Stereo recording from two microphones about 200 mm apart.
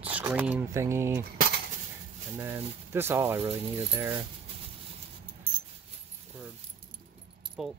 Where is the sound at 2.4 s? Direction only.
10° right (ahead or behind).